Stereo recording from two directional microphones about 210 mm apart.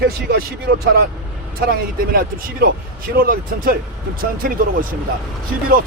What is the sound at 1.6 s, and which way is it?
Speech, 45° right (ahead or behind).